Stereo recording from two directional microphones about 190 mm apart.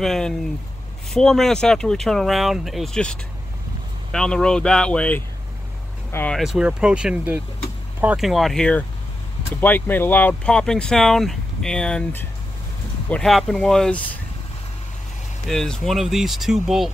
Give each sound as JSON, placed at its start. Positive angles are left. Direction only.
{"t": 0.0, "sound": "speech", "side_deg": 0}
{"t": 15.4, "sound": "speech", "side_deg": 5}